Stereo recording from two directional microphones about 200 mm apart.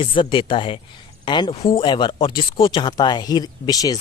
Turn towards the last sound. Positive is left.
turn(degrees=20)  # may be behind; listen again after turning